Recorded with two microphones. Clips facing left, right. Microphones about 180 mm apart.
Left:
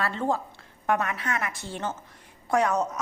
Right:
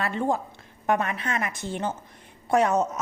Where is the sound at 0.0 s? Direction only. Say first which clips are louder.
Right 1 dB; 15° right (ahead or behind).